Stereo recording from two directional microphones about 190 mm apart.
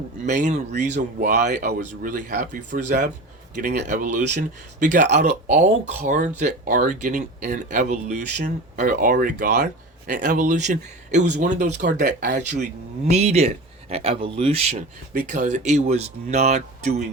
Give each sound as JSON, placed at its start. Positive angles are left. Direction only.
{"t": 0.3, "sound": "speech", "side_deg": -40}